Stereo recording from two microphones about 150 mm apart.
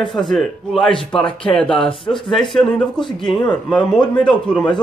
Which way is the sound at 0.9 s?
35° left (ahead or behind).